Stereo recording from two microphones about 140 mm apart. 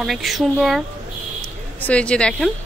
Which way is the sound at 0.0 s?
Centre (ahead or behind).